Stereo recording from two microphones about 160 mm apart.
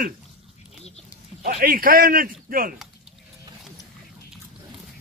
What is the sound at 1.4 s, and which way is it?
A man's voice, 60° right (ahead or behind).